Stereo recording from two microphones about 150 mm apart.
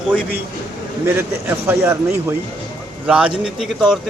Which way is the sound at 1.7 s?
15° right (ahead or behind).